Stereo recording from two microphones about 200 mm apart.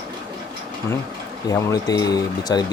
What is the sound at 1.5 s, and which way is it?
Speech, 15° left (ahead or behind).